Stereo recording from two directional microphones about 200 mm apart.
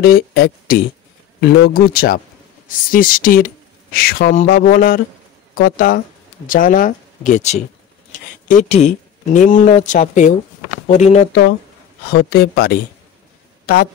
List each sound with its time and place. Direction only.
0.0 s speech: 50° left (ahead or behind)
12.1 s speech: 50° left (ahead or behind)